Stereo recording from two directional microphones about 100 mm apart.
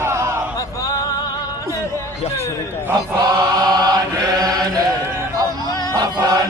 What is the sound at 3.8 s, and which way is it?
Chant, 40° right (ahead or behind).